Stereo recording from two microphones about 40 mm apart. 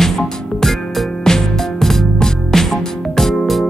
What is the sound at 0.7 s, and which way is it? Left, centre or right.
Music, centre.